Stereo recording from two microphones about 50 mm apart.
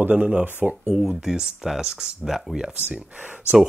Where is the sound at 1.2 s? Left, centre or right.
Centre.